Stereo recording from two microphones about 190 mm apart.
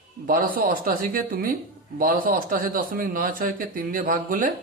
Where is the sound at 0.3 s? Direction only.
45° right (ahead or behind).